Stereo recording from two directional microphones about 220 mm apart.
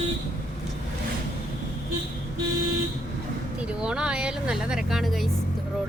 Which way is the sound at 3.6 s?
5° right (ahead or behind).